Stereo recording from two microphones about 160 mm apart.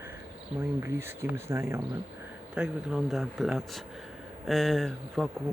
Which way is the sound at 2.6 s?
5° right (ahead or behind).